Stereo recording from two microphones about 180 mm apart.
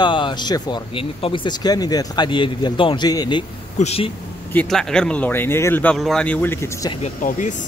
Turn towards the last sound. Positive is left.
turn(degrees=45)  # may be behind; listen again after turning